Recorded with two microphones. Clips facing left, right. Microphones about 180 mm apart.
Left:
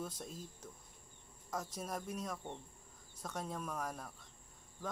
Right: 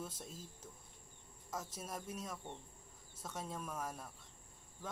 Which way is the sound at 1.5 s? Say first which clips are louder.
Left 3 dB; 5° right (ahead or behind).